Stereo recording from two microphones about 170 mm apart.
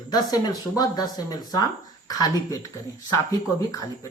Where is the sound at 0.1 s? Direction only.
20° left (ahead or behind).